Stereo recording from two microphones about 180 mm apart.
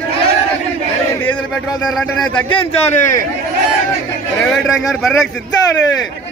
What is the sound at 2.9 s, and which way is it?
Speech, 45° left (ahead or behind).